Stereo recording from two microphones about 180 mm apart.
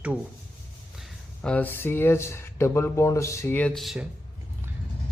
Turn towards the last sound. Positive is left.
turn(degrees=0)  # may be behind; listen again after turning